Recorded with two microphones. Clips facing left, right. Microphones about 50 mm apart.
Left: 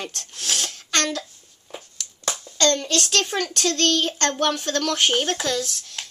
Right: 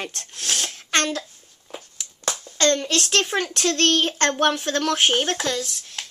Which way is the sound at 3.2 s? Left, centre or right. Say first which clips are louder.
Right 1 dB; right.